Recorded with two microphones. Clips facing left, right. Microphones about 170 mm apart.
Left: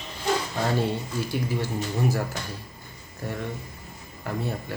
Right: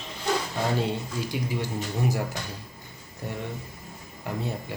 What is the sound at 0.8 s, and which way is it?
Speech, 15° right (ahead or behind).